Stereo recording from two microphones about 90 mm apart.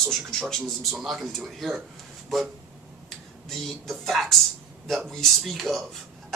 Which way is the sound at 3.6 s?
5° left (ahead or behind).